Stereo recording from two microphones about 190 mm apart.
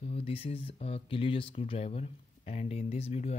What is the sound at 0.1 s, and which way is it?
Speech, 30° left (ahead or behind).